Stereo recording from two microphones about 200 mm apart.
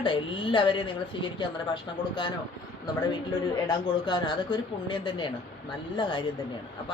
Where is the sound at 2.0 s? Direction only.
20° left (ahead or behind).